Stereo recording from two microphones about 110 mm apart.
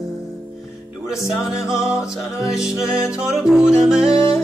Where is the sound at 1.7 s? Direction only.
5° right (ahead or behind).